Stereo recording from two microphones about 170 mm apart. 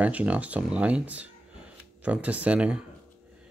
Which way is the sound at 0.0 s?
10° right (ahead or behind).